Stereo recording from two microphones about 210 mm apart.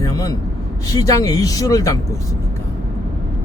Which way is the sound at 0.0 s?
15° left (ahead or behind).